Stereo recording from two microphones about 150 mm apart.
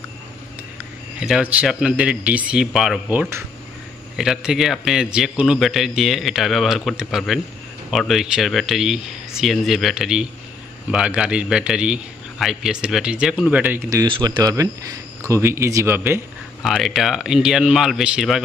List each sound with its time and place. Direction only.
1.2 s a man's voice: 5° right (ahead or behind)
3.1 s a man's voice: 15° right (ahead or behind)
4.2 s a man's voice: 5° right (ahead or behind)
14.0 s speech: 30° right (ahead or behind); by 16.2 s 15° right (ahead or behind)
16.6 s a man's voice: centre (ahead or behind)